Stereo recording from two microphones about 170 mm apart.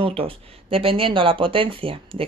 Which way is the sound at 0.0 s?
35° right (ahead or behind).